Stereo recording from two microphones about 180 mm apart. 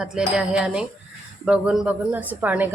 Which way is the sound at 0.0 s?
5° right (ahead or behind).